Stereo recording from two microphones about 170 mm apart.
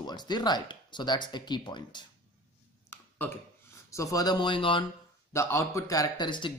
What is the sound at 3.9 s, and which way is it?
Speech, 20° left (ahead or behind).